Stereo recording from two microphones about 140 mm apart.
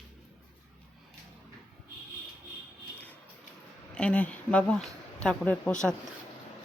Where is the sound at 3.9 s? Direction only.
10° left (ahead or behind).